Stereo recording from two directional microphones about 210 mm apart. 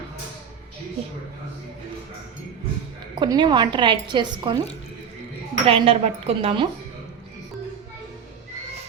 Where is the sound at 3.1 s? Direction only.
20° right (ahead or behind).